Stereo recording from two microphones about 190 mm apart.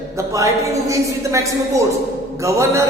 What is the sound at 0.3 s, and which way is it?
A woman's voice, 15° right (ahead or behind).